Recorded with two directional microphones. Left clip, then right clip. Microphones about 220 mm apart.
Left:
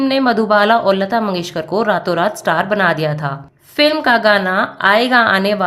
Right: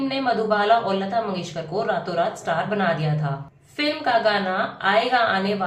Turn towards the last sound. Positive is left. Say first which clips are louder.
# left 8 dB
turn(degrees=50)  # may be behind; listen again after turning